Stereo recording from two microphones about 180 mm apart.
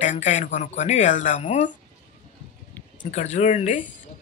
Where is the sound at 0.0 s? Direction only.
45° left (ahead or behind).